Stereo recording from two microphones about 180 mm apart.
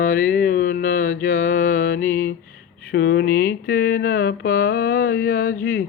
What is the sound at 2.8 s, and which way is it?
Speech, 55° left (ahead or behind).